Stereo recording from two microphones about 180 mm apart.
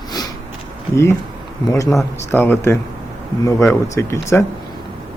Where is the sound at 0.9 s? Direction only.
15° left (ahead or behind).